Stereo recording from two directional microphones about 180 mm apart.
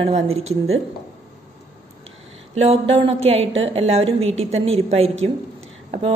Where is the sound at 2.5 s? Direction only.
35° right (ahead or behind).